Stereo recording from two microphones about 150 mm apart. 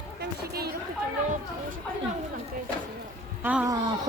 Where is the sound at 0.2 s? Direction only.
90° right.